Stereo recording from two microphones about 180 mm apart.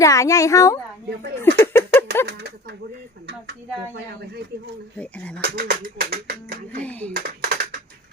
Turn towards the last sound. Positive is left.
turn(degrees=-55)  # may be behind; listen again after turning